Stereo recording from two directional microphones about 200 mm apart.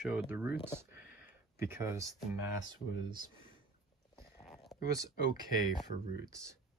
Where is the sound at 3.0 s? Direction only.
20° right (ahead or behind).